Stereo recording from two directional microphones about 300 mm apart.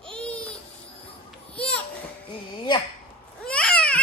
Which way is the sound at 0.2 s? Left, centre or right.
Centre.